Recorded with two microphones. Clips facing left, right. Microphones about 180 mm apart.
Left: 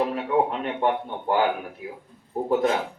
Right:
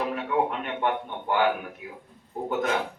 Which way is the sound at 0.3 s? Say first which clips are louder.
Left 3 dB; 30° left (ahead or behind).